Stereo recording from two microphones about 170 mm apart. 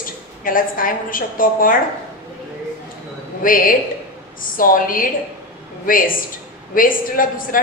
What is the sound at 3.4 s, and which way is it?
A woman's voice, 55° left (ahead or behind).